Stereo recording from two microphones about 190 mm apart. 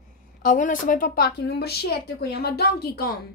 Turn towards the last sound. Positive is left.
turn(degrees=55)  # may be behind; listen again after turning